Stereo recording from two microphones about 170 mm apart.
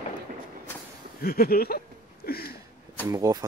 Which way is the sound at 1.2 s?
60° left (ahead or behind).